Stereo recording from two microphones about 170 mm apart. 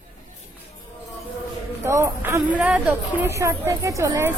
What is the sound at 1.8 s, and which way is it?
A woman's voice, 15° right (ahead or behind).